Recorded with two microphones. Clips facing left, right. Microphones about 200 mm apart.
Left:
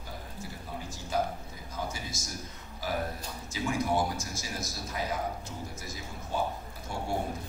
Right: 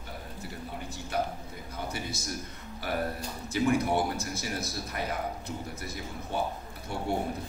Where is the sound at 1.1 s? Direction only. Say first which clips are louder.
Left 1 dB; 60° right (ahead or behind).